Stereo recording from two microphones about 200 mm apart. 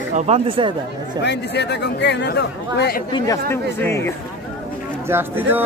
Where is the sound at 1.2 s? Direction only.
60° left (ahead or behind).